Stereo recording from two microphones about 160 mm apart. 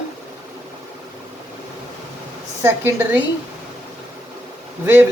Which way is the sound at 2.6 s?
15° right (ahead or behind).